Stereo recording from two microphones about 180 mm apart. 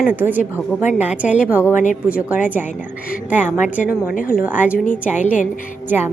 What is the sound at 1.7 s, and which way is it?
Speech, 45° left (ahead or behind).